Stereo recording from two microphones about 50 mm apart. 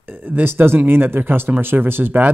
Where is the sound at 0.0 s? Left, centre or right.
Right.